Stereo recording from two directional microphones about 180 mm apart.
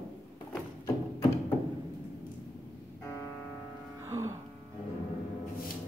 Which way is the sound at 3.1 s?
10° left (ahead or behind).